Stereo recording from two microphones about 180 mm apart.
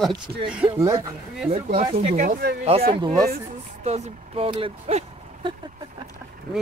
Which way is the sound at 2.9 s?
20° right (ahead or behind).